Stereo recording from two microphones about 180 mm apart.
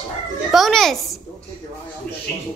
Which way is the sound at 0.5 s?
Centre (ahead or behind).